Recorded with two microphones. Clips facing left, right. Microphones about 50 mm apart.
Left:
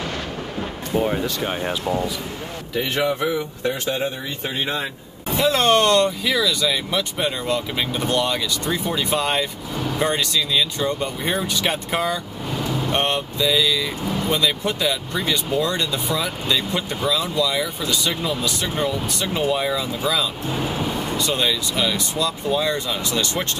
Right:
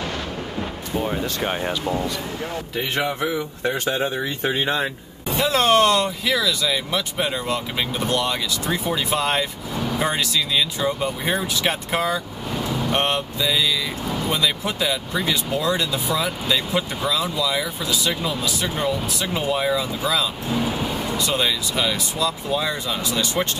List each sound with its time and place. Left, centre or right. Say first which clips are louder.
0.9 s speech: left 4 dB; centre
1.4 s a man's voice: right 1 dB; centre
1.7 s speech: left 1 dB; centre
2.7 s a man's voice: left 4 dB; centre
3.9 s speech: right 2 dB; right
5.3 s speech: left 1 dB; centre